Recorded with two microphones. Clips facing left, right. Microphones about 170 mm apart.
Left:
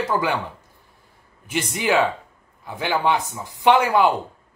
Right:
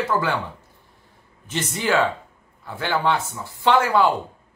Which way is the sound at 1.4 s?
10° left (ahead or behind).